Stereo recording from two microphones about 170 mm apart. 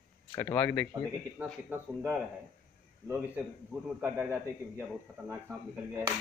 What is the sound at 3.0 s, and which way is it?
A man's voice, 15° right (ahead or behind).